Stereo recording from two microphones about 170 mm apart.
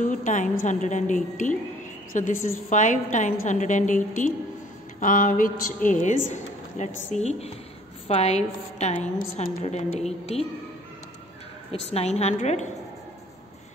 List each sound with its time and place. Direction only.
0.0 s a woman's voice: 50° left (ahead or behind)
11.9 s a woman's voice: 40° left (ahead or behind)